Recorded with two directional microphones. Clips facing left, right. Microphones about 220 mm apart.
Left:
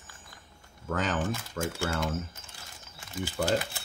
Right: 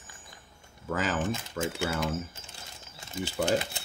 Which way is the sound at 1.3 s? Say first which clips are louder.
Right 1 dB; 20° right (ahead or behind).